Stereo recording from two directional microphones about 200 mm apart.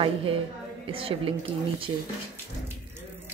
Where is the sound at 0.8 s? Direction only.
25° right (ahead or behind).